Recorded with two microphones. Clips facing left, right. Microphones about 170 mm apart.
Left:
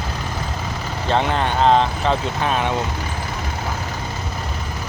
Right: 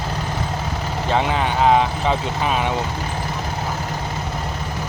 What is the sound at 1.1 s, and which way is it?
Speech, 5° right (ahead or behind).